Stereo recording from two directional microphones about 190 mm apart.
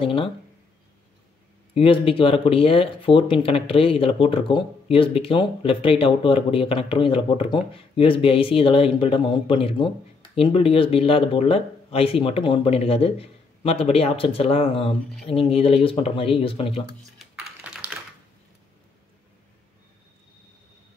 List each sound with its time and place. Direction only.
0.0 s speech: 30° left (ahead or behind)
1.7 s speech: 30° left (ahead or behind)